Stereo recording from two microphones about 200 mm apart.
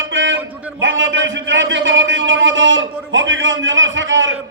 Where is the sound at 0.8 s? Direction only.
70° right (ahead or behind).